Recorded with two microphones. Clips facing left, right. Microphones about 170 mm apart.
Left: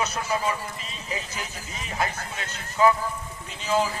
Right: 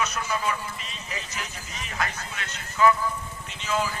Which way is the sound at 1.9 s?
25° left (ahead or behind).